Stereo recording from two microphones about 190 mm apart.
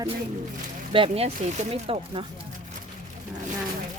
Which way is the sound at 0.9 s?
30° right (ahead or behind).